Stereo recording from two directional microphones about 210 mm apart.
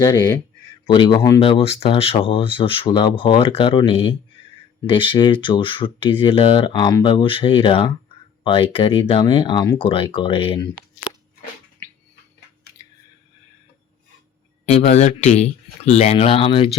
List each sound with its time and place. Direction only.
0.0 s speech: 20° left (ahead or behind)
14.7 s speech: 35° left (ahead or behind)